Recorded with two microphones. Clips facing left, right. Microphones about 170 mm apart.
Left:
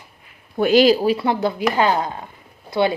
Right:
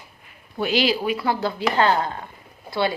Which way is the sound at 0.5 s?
45° left (ahead or behind).